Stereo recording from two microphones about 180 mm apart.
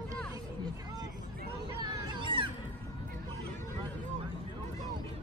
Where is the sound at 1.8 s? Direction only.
25° right (ahead or behind).